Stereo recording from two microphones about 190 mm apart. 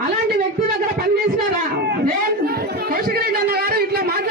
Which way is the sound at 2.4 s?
55° right (ahead or behind).